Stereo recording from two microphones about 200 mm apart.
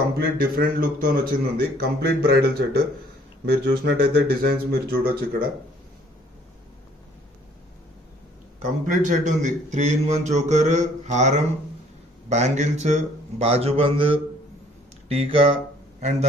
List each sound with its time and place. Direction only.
0.4 s speech: 45° right (ahead or behind)
8.8 s speech: 40° right (ahead or behind)